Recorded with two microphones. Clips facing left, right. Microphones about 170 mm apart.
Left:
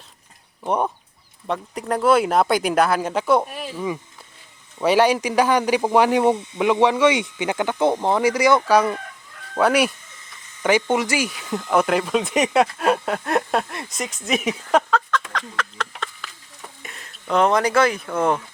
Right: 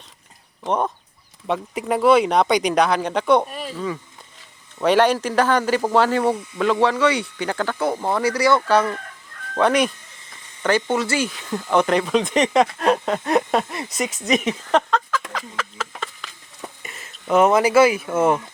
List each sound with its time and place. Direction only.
0.6 s speech: 10° left (ahead or behind)
1.5 s speech: centre (ahead or behind)
4.8 s speech: 10° left (ahead or behind)
14.3 s a sound: 5° left (ahead or behind)
16.8 s speech: centre (ahead or behind)